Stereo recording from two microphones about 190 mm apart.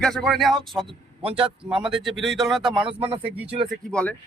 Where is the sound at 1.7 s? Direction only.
Centre (ahead or behind).